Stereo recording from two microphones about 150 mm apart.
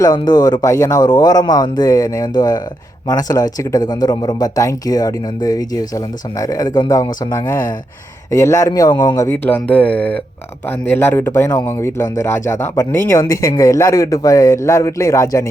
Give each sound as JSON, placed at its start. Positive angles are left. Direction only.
{"t": 0.0, "sound": "speech", "side_deg": 25}
{"t": 9.3, "sound": "speech", "side_deg": 10}